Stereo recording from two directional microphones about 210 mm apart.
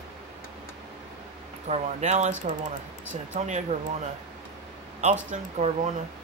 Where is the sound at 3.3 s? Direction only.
35° right (ahead or behind).